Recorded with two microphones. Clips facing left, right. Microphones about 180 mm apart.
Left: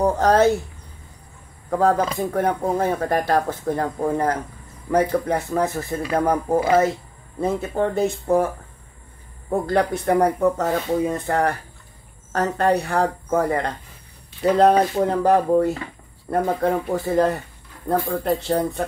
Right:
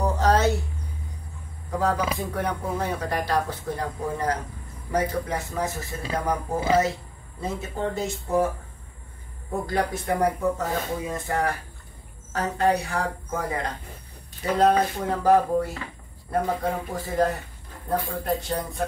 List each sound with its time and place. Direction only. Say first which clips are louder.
0.0 s a sound: left 5 dB; 55° left (ahead or behind)
1.7 s speech: left 6 dB; 55° left (ahead or behind)
9.7 s speech: left 6 dB; 65° left (ahead or behind)
15.0 s speech: left 3 dB; 60° left (ahead or behind)
16.3 s speech: left 5 dB; 75° left (ahead or behind)